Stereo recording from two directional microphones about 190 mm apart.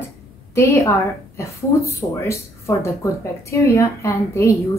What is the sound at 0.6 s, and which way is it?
Speech, 15° left (ahead or behind).